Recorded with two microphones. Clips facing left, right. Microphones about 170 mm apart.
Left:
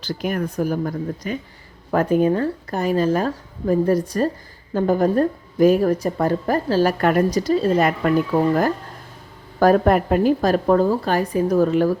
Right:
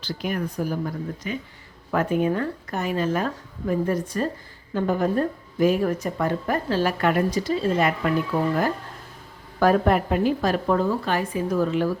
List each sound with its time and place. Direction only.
0.0 s a woman's voice: 45° left (ahead or behind)